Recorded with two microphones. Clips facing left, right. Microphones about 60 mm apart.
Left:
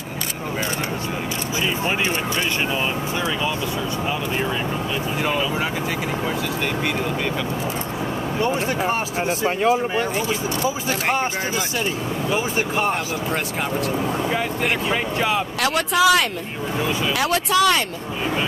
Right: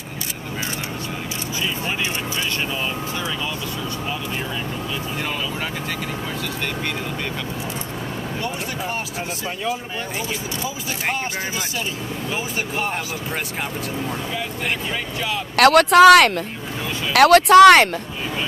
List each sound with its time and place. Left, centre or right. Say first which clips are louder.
8.4 s speech: left 8 dB; left
15.5 s speech: right 8 dB; right